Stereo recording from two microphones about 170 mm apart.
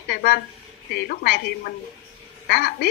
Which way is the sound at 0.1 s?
70° left (ahead or behind).